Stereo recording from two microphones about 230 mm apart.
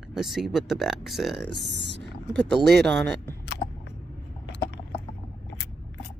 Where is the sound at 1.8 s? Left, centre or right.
Right.